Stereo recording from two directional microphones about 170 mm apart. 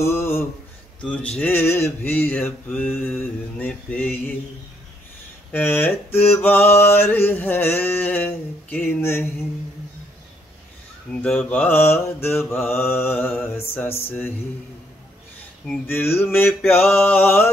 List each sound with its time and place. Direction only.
0.0 s a sound: 15° left (ahead or behind)
1.0 s mantra: 5° left (ahead or behind)
5.5 s mantra: 10° left (ahead or behind)
11.2 s mantra: 5° left (ahead or behind)
15.6 s mantra: 10° left (ahead or behind)